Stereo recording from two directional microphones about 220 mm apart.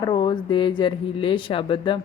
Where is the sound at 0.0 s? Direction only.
20° left (ahead or behind).